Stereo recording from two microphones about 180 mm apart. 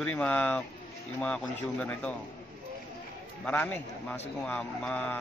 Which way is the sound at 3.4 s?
10° left (ahead or behind).